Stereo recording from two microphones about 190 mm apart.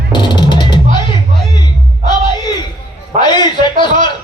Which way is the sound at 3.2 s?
25° left (ahead or behind).